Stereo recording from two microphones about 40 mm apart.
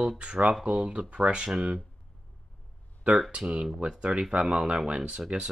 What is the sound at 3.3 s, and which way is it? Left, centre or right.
Speech, right.